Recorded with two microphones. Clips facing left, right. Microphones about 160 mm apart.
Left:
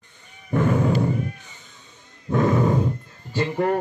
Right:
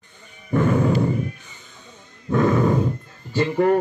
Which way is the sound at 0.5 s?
5° left (ahead or behind).